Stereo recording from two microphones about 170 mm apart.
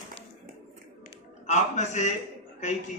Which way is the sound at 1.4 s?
45° left (ahead or behind).